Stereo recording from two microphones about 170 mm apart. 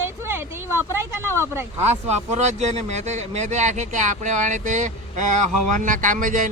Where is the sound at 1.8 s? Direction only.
40° right (ahead or behind).